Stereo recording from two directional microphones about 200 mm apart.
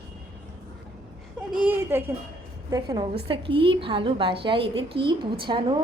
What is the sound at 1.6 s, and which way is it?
A woman's voice, 10° right (ahead or behind).